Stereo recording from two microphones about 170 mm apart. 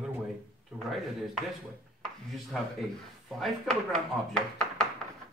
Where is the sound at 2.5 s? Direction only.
Centre (ahead or behind).